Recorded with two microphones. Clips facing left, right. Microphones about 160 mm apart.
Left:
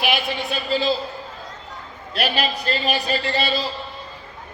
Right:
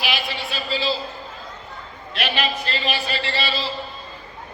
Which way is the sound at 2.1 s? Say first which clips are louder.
Left 2 dB; 40° left (ahead or behind).